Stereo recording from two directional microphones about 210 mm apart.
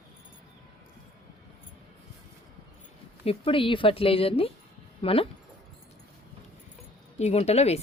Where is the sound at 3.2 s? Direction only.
25° left (ahead or behind).